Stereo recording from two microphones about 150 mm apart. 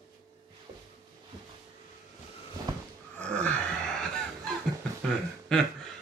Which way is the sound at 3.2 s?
10° left (ahead or behind).